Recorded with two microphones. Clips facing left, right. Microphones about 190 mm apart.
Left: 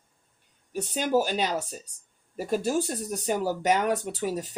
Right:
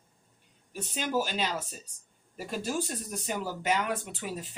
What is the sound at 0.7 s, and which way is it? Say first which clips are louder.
Speech: left 6 dB; 45° left (ahead or behind).